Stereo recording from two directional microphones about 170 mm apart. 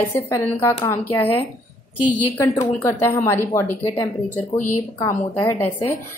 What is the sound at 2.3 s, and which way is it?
A woman's voice, 15° left (ahead or behind).